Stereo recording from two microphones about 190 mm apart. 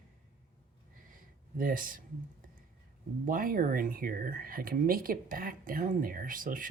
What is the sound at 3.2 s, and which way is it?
Speech, 45° right (ahead or behind).